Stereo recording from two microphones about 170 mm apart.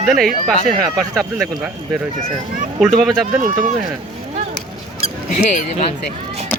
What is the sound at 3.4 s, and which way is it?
Speech, 50° right (ahead or behind).